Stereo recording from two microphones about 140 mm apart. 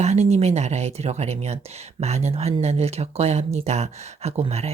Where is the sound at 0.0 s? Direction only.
50° right (ahead or behind).